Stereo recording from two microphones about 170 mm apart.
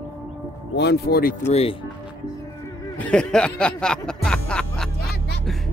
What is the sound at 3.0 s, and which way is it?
Speech, 5° left (ahead or behind).